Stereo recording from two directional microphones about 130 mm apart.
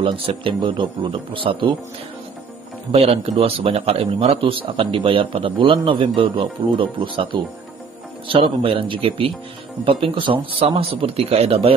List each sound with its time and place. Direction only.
0.0 s speech: 45° right (ahead or behind)
2.9 s speech: 55° right (ahead or behind)
4.4 s speech: 40° right (ahead or behind)
8.3 s speech: 45° right (ahead or behind)